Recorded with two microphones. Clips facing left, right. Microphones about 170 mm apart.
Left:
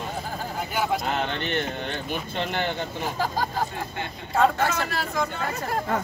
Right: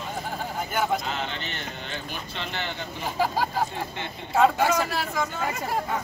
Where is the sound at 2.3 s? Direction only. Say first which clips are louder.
Left 6 dB; 50° left (ahead or behind).